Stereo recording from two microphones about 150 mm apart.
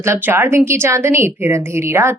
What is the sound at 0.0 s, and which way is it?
A woman's voice, 15° right (ahead or behind).